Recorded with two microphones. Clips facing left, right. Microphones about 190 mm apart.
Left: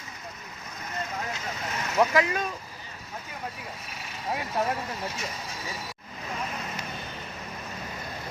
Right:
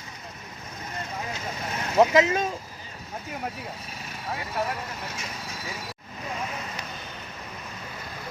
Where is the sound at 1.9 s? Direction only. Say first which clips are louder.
Right 4 dB; 25° right (ahead or behind).